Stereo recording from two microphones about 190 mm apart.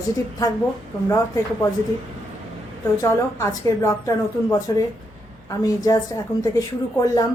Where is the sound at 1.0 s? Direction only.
15° left (ahead or behind).